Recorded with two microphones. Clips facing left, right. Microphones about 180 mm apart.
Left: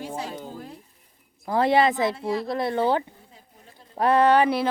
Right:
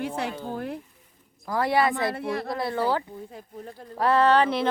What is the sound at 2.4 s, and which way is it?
Speech, 25° left (ahead or behind).